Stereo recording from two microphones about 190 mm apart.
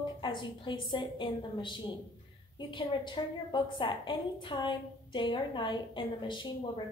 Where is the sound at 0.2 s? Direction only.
25° left (ahead or behind).